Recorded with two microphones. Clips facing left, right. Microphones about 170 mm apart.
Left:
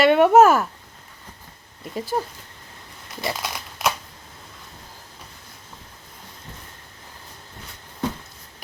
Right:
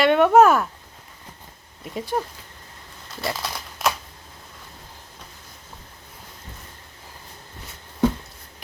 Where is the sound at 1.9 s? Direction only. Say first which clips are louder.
Even; 5° left (ahead or behind).